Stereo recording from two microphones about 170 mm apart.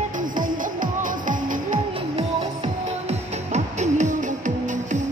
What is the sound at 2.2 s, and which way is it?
Music, 40° right (ahead or behind).